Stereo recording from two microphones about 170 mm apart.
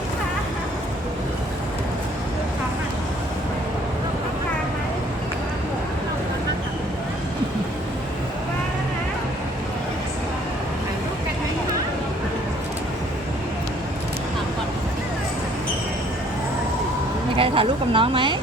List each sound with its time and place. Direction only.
17.3 s speech: 30° right (ahead or behind)